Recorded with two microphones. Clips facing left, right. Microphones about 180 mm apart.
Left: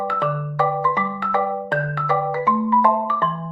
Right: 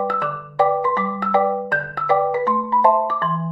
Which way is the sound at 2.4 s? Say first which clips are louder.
Left 1 dB; 35° right (ahead or behind).